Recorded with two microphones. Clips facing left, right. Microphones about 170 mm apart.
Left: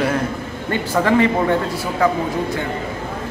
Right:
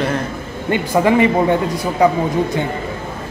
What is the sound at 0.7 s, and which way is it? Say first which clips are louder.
Speech: right 3 dB; 15° right (ahead or behind).